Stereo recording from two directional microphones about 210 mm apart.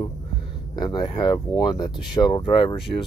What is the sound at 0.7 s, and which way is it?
Speech, 20° left (ahead or behind).